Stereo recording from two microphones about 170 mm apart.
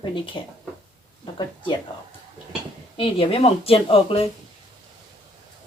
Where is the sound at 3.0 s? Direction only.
35° left (ahead or behind).